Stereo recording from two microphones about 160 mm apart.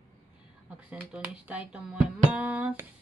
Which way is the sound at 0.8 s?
5° right (ahead or behind).